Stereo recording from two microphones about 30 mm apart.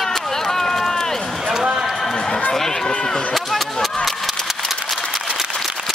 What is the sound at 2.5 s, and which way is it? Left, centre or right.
Run, centre.